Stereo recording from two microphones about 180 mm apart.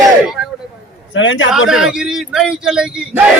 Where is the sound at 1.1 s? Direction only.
90° left.